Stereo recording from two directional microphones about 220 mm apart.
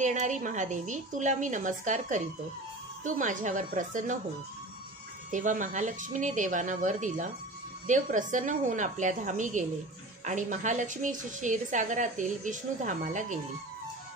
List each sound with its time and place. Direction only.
0.0 s a woman's voice: 35° right (ahead or behind)
5.3 s a woman's voice: 35° right (ahead or behind)